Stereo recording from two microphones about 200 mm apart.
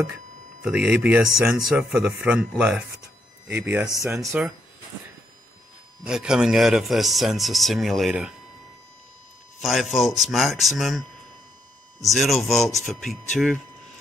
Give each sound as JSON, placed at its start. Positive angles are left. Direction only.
{"t": 0.6, "sound": "a man's voice", "side_deg": -10}
{"t": 6.0, "sound": "speech", "side_deg": -5}
{"t": 9.6, "sound": "speech", "side_deg": 0}